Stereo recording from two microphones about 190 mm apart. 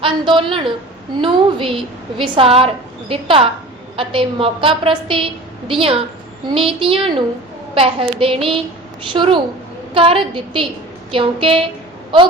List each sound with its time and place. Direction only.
0.0 s a woman's voice: 25° right (ahead or behind)